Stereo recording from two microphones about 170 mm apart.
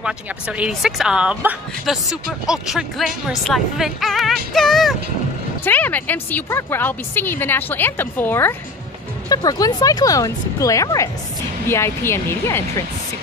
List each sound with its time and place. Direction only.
0.0 s a woman's voice: 5° right (ahead or behind); by 12.8 s 15° left (ahead or behind)